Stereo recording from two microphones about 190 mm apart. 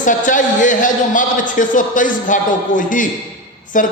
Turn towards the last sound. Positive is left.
turn(degrees=45)  # may be behind; listen again after turning